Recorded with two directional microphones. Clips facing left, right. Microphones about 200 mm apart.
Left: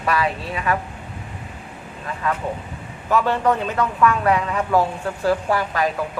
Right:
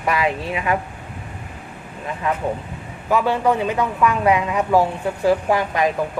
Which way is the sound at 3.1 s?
10° right (ahead or behind).